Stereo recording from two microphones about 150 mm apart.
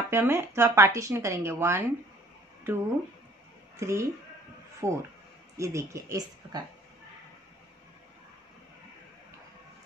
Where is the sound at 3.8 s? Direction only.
20° right (ahead or behind).